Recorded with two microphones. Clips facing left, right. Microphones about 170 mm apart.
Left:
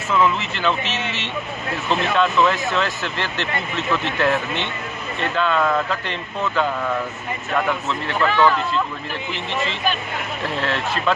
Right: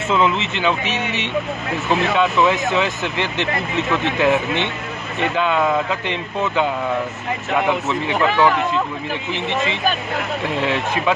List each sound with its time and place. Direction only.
0.1 s speech: 20° right (ahead or behind)